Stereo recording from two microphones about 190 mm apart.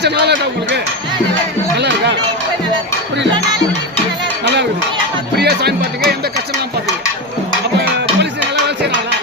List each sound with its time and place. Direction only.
0.0 s speech: 60° right (ahead or behind)
1.7 s music: 60° right (ahead or behind)
5.4 s music: 60° right (ahead or behind)
7.8 s music: 65° right (ahead or behind)